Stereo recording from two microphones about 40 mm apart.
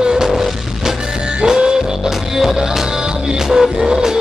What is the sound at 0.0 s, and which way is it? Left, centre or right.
Music, centre.